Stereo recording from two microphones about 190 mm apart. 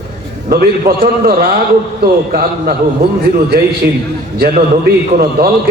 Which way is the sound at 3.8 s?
60° right (ahead or behind).